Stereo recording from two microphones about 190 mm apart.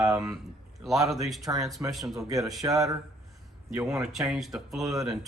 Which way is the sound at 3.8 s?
Centre (ahead or behind).